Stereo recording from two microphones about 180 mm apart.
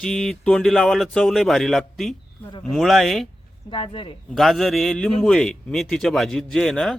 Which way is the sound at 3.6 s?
30° left (ahead or behind).